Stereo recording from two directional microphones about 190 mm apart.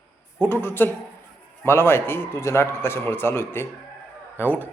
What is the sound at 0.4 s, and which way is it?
A man's voice, 10° left (ahead or behind).